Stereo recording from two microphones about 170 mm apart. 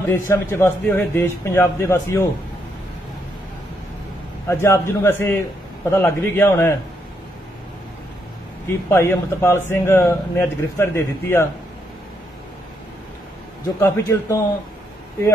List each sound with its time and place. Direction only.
0.1 s a man's voice: 15° left (ahead or behind)
4.5 s a man's voice: 15° left (ahead or behind)
8.6 s a man's voice: 15° left (ahead or behind)
13.7 s a man's voice: 15° left (ahead or behind)